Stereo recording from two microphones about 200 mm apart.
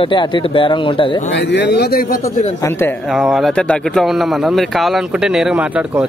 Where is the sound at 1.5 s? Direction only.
60° left (ahead or behind).